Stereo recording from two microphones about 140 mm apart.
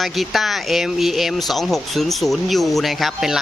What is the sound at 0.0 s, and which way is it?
Speech, centre (ahead or behind).